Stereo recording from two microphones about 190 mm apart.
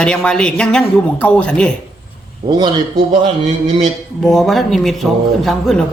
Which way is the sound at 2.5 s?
25° right (ahead or behind).